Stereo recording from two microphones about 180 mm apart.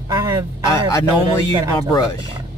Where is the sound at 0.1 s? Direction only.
20° right (ahead or behind).